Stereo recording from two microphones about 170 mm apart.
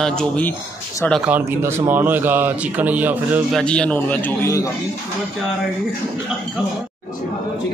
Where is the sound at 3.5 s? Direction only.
5° left (ahead or behind).